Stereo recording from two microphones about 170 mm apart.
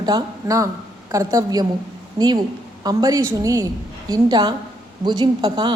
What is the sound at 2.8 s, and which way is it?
A woman's voice, 20° right (ahead or behind).